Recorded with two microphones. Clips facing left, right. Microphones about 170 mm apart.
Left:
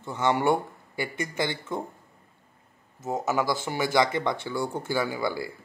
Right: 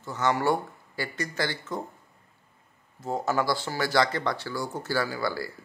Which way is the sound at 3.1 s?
20° left (ahead or behind).